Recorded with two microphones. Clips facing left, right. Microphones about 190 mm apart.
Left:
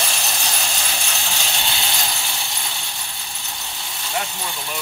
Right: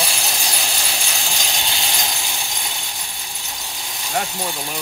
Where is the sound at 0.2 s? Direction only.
10° right (ahead or behind).